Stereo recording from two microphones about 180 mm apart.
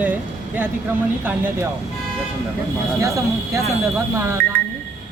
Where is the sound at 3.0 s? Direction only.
15° right (ahead or behind).